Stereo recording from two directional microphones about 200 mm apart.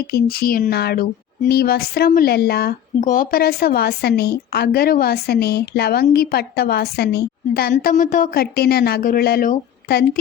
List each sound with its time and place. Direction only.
0.1 s a woman's voice: 50° left (ahead or behind)